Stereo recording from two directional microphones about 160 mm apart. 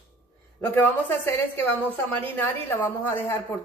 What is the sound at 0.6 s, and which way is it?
A woman's voice, 10° left (ahead or behind).